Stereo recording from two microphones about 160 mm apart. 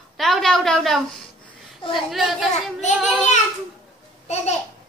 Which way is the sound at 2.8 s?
45° left (ahead or behind).